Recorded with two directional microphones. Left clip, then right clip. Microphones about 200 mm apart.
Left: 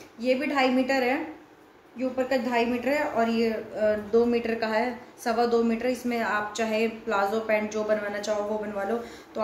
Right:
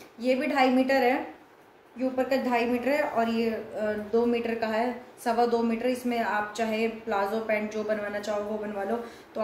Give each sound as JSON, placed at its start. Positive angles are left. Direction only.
{"t": 0.2, "sound": "a woman's voice", "side_deg": -5}